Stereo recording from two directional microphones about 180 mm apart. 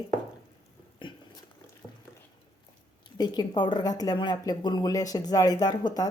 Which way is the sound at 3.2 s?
25° left (ahead or behind).